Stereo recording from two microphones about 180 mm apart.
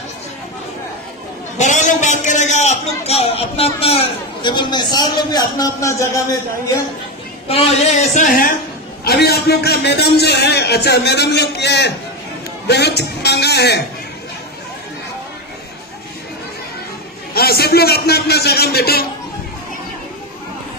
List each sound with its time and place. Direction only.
1.6 s a man's voice: 40° left (ahead or behind); by 6.2 s 15° left (ahead or behind)
7.4 s a man's voice: 35° left (ahead or behind); by 13.8 s 65° left (ahead or behind)
17.3 s a man's voice: 60° left (ahead or behind)